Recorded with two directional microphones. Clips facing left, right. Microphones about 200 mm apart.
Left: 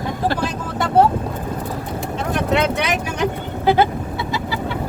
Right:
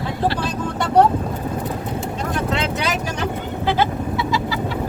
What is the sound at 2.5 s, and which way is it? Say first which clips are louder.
Speech: left 4 dB; 65° left (ahead or behind).